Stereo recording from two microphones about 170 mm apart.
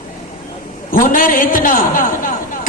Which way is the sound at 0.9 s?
55° left (ahead or behind).